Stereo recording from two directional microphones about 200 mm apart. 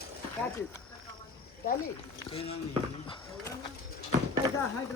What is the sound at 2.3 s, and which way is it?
Speech, 30° left (ahead or behind).